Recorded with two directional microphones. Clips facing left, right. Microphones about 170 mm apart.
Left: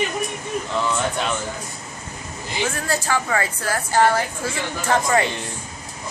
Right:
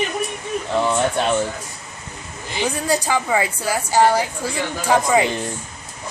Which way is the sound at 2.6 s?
15° right (ahead or behind).